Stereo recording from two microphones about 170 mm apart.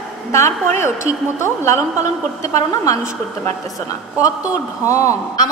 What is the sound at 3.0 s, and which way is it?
Speech, 45° right (ahead or behind).